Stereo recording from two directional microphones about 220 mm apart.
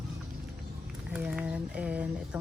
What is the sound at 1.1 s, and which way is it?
Speech, 5° right (ahead or behind).